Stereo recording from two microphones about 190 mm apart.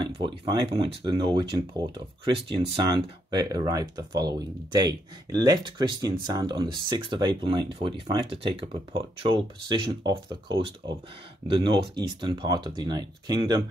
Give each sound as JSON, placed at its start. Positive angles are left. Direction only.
{"t": 0.0, "sound": "speech", "side_deg": -20}